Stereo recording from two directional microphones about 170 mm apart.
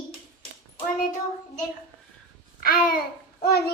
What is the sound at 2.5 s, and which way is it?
Babbling, 55° left (ahead or behind).